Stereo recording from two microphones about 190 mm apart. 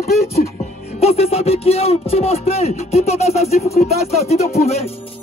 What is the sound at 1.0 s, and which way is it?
Speech, 35° left (ahead or behind).